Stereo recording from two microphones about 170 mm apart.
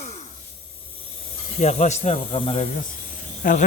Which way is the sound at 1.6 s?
45° left (ahead or behind).